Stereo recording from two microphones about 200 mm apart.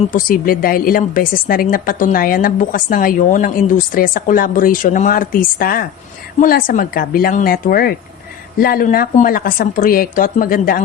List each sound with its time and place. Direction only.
0.1 s a woman's voice: 45° left (ahead or behind)